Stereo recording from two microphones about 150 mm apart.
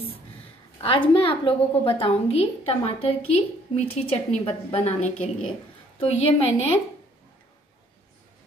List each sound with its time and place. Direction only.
0.7 s a woman's voice: 35° left (ahead or behind)